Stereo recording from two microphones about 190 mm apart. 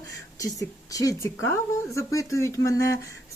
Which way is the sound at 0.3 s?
15° left (ahead or behind).